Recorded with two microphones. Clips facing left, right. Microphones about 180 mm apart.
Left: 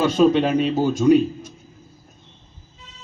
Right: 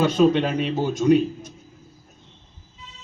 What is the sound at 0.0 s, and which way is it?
Speech, 40° left (ahead or behind).